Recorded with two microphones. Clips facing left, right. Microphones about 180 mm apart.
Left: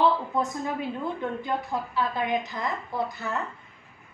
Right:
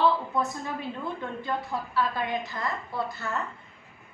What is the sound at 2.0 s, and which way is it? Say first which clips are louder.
A woman's voice: left 1 dB; 20° left (ahead or behind).